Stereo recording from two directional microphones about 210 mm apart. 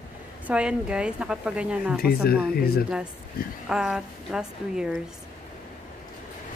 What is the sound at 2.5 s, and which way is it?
Speech, 45° left (ahead or behind).